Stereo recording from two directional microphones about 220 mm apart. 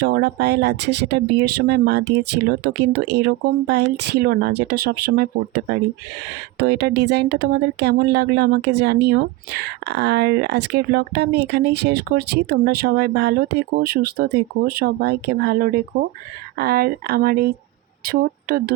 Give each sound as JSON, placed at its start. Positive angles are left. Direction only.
{"t": 0.0, "sound": "speech", "side_deg": -50}